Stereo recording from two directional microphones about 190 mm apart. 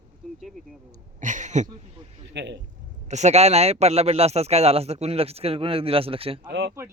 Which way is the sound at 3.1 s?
35° right (ahead or behind).